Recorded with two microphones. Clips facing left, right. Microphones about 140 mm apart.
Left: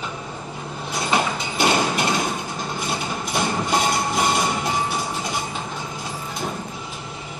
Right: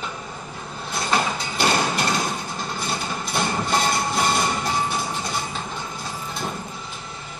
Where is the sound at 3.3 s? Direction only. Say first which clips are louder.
Left 1 dB; 10° left (ahead or behind).